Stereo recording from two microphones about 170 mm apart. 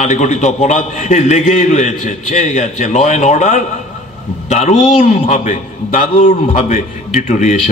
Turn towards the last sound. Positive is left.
turn(degrees=45)  # may be behind; listen again after turning